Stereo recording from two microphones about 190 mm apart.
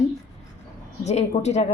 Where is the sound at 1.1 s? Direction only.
35° left (ahead or behind).